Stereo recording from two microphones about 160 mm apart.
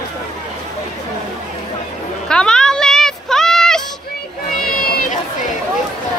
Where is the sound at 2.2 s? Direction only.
5° left (ahead or behind).